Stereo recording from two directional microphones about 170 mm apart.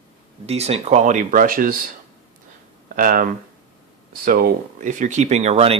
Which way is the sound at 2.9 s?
55° right (ahead or behind).